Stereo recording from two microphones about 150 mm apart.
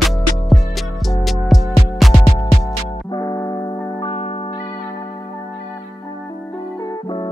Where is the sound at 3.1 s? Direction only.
25° left (ahead or behind); by 4.4 s 40° left (ahead or behind).